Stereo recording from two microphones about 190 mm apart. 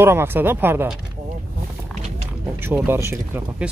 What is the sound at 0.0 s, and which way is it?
Speech, 10° right (ahead or behind).